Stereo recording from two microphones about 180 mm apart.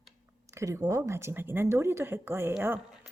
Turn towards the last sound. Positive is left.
turn(degrees=-5)  # may be behind; listen again after turning